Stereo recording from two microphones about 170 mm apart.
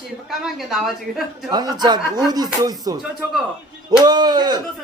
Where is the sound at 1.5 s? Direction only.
25° right (ahead or behind).